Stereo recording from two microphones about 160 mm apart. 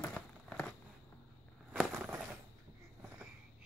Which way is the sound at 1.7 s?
5° right (ahead or behind).